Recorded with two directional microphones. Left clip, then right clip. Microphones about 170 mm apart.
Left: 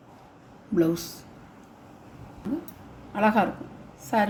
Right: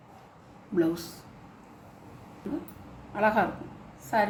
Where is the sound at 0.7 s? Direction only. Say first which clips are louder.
Left 3 dB; 50° left (ahead or behind).